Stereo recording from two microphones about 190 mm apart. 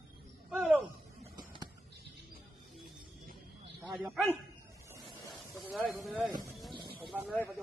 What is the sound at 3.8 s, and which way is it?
Speech, 5° right (ahead or behind).